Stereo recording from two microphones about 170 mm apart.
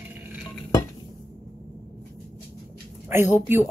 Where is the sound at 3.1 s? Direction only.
15° right (ahead or behind).